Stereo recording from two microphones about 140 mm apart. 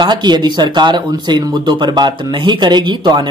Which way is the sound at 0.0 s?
30° right (ahead or behind).